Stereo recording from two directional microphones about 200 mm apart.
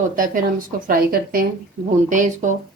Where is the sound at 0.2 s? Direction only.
45° right (ahead or behind).